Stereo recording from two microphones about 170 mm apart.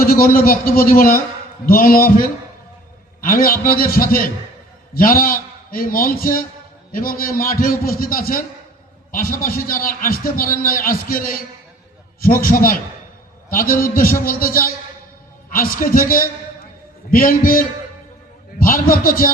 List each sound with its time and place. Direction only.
0.0 s a man's voice: 60° left (ahead or behind)
3.2 s a man's voice: 55° left (ahead or behind)